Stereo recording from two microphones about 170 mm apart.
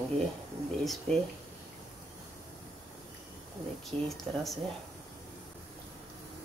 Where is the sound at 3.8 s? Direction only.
Centre (ahead or behind).